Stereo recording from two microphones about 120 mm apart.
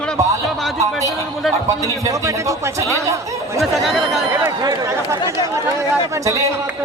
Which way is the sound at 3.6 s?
Centre (ahead or behind).